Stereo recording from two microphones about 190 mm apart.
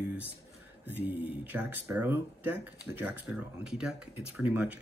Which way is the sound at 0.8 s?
10° right (ahead or behind).